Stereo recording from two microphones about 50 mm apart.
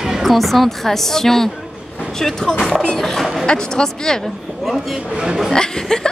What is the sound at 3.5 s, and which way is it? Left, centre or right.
Speech, centre.